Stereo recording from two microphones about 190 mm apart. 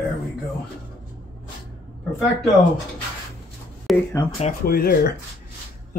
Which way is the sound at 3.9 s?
Centre (ahead or behind).